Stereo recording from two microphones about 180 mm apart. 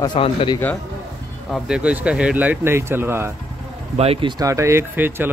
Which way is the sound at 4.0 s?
30° right (ahead or behind).